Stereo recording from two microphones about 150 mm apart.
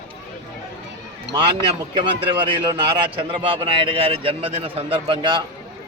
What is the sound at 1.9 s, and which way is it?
A man's voice, 35° right (ahead or behind).